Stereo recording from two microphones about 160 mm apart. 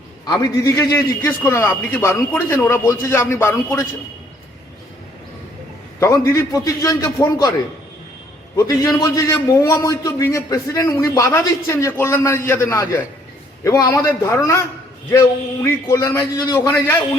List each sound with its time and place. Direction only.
0.3 s a man's voice: 20° left (ahead or behind)
6.0 s a man's voice: 20° left (ahead or behind)
8.5 s a man's voice: 20° left (ahead or behind)